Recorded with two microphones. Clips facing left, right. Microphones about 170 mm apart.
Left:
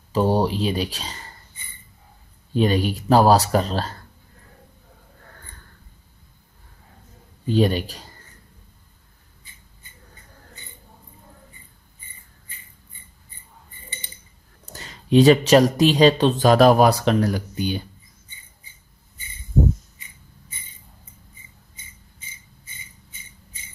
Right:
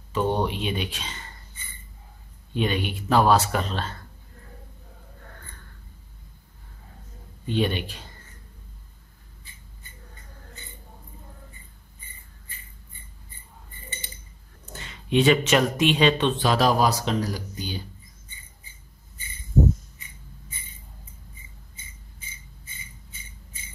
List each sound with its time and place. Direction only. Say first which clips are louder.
0.1 s speech: left 5 dB; 35° left (ahead or behind)
2.5 s speech: left 6 dB; 35° left (ahead or behind)
7.4 s speech: left 5 dB; 40° left (ahead or behind)
14.7 s speech: left 6 dB; 40° left (ahead or behind); by 17.8 s 60° left (ahead or behind)